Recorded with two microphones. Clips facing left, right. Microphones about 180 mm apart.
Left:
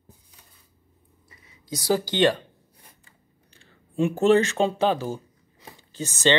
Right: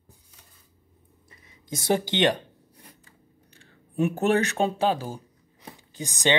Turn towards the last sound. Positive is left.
turn(degrees=-15)  # may be behind; listen again after turning